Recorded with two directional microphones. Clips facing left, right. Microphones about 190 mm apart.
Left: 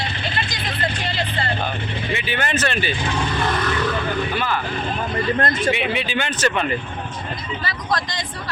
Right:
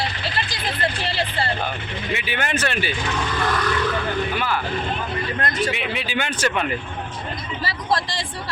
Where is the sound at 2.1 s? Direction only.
10° right (ahead or behind).